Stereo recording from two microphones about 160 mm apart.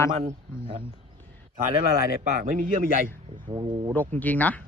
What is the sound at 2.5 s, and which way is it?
Speech, 60° right (ahead or behind).